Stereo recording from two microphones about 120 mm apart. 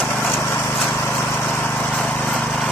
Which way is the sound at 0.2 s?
20° left (ahead or behind).